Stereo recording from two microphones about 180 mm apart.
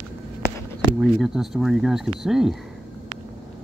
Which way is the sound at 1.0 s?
Centre (ahead or behind).